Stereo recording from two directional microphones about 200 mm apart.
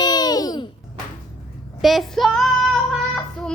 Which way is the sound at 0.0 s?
20° left (ahead or behind).